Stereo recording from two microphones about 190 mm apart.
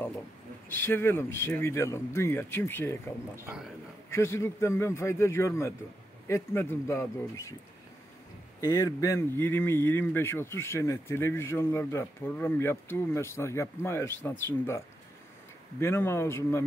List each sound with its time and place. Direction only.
0.7 s speech: 10° left (ahead or behind)
3.3 s a man's voice: 15° right (ahead or behind)
4.1 s speech: 15° left (ahead or behind)
8.5 s speech: 15° left (ahead or behind)
15.8 s speech: 10° left (ahead or behind)